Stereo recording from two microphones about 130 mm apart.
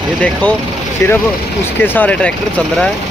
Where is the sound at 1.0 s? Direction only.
20° left (ahead or behind).